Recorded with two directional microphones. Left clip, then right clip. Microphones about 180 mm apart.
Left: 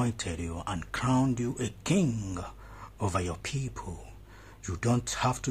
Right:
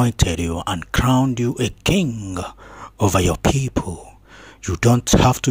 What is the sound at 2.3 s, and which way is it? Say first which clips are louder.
Speech: right 12 dB; 40° right (ahead or behind).